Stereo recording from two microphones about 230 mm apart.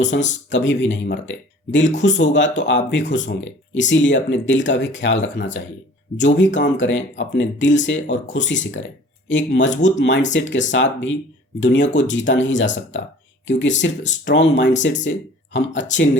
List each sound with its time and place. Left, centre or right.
0.0 s speech: left